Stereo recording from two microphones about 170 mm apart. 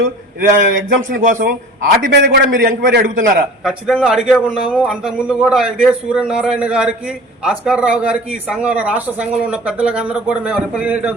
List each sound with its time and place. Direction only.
0.4 s a man's voice: 75° right (ahead or behind)
1.2 s a man's voice: 50° right (ahead or behind)
2.1 s a man's voice: 70° right (ahead or behind)
3.6 s a man's voice: centre (ahead or behind)